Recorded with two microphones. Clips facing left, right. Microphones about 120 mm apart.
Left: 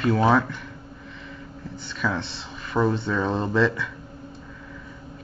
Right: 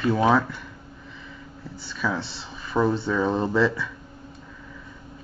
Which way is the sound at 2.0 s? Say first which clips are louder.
Even; 10° right (ahead or behind).